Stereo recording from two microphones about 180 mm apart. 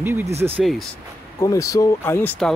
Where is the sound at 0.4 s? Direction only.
10° right (ahead or behind).